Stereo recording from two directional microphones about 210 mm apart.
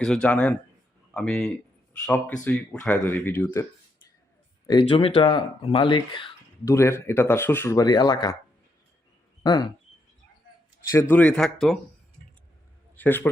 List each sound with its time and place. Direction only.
0.0 s speech: 5° left (ahead or behind)
4.6 s speech: 20° left (ahead or behind)
9.4 s speech: 20° left (ahead or behind)
11.1 s speech: 5° left (ahead or behind)
13.0 s a man's voice: 10° left (ahead or behind)